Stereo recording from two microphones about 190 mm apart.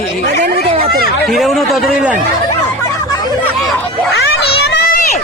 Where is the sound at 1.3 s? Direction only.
Centre (ahead or behind).